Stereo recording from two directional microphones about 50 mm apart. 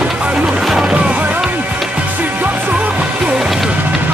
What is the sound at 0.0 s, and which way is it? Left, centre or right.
Music, right.